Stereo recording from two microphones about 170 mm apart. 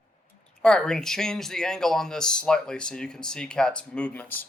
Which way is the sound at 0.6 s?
5° left (ahead or behind).